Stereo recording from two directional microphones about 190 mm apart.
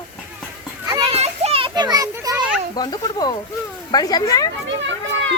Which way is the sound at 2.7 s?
20° left (ahead or behind).